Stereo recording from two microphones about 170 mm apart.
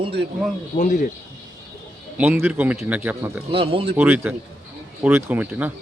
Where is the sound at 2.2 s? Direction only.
10° right (ahead or behind).